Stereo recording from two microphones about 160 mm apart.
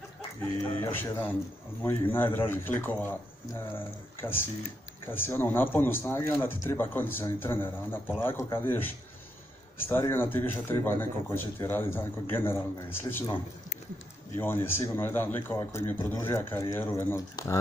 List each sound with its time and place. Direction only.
0.8 s speech: 15° left (ahead or behind)